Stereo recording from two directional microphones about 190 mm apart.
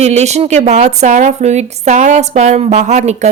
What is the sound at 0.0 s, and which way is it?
A woman's voice, 35° right (ahead or behind).